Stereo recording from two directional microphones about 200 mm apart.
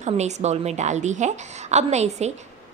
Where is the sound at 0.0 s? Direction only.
35° right (ahead or behind).